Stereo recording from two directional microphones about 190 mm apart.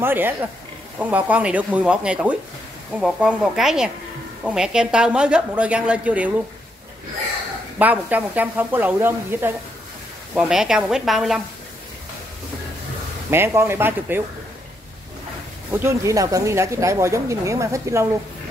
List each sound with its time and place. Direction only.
0.0 s a woman's voice: 10° right (ahead or behind)
7.8 s a woman's voice: 10° right (ahead or behind)
13.3 s speech: 15° right (ahead or behind)
15.7 s speech: 15° right (ahead or behind)